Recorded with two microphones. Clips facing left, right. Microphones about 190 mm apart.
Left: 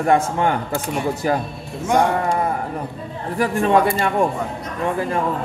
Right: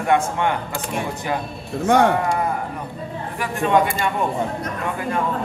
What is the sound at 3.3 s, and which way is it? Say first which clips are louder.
Speech: left 2 dB; 35° left (ahead or behind).